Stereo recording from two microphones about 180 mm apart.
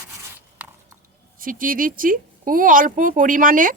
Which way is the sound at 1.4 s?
50° right (ahead or behind).